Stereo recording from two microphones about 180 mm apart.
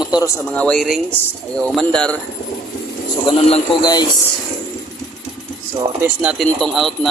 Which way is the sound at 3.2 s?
25° left (ahead or behind).